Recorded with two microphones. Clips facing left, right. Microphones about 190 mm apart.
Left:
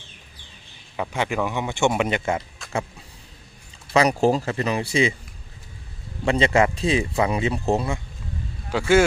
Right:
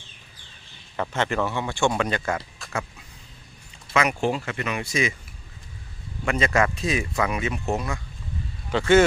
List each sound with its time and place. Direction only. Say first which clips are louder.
0.9 s a man's voice: even; 10° left (ahead or behind)
3.9 s speech: left 5 dB; 35° left (ahead or behind)
6.2 s speech: left 4 dB; 30° left (ahead or behind)
8.7 s a man's voice: even; 5° left (ahead or behind)